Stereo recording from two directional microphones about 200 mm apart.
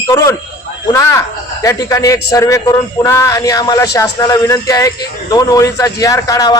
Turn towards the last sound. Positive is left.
turn(degrees=15)  # may be behind; listen again after turning